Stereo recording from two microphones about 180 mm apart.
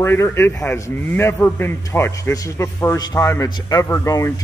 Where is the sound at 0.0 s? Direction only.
15° left (ahead or behind).